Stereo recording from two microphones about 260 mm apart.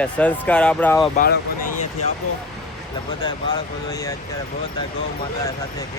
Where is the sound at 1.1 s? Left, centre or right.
Left.